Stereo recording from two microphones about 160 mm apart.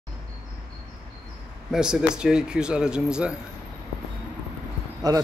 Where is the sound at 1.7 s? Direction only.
5° right (ahead or behind).